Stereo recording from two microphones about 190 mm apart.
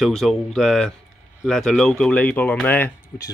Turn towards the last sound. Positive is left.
turn(degrees=10)  # may be behind; listen again after turning